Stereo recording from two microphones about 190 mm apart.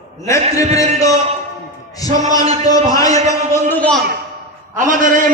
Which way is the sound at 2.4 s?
35° right (ahead or behind).